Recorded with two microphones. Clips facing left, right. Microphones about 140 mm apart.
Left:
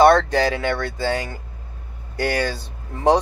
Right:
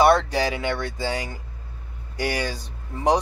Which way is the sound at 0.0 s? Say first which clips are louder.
Left 4 dB; 10° right (ahead or behind).